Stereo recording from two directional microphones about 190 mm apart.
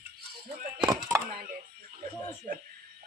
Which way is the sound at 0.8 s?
15° right (ahead or behind).